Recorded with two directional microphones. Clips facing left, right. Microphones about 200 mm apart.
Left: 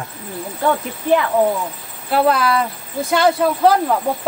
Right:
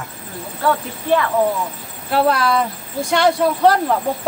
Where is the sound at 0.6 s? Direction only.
20° left (ahead or behind).